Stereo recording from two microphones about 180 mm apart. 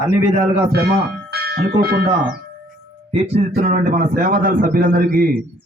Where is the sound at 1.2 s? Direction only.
60° right (ahead or behind).